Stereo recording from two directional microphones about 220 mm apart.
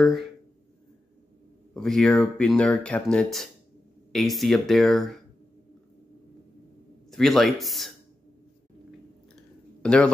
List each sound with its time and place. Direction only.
0.0 s speech: centre (ahead or behind)
1.7 s speech: centre (ahead or behind)
7.1 s speech: centre (ahead or behind)
9.3 s a sound: 5° left (ahead or behind)